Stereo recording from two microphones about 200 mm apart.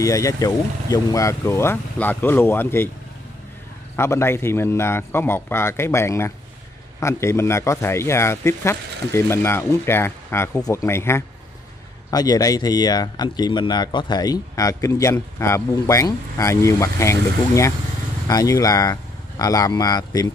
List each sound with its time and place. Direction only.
0.0 s speech: 15° left (ahead or behind)
3.9 s speech: 10° left (ahead or behind)